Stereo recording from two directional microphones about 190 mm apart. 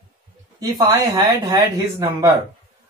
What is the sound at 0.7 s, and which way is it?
Speech, 20° right (ahead or behind).